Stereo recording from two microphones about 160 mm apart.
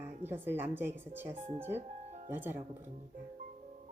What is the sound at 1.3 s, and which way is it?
Speech, 50° right (ahead or behind).